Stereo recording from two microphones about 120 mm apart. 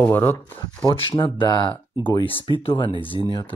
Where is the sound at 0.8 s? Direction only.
50° left (ahead or behind).